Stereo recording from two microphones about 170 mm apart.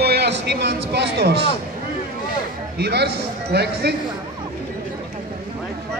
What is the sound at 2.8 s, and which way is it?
A man's voice, 75° right (ahead or behind).